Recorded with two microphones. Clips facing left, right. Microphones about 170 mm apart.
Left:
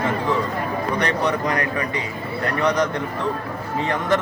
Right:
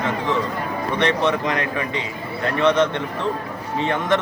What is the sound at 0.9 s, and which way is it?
Speech, 25° right (ahead or behind).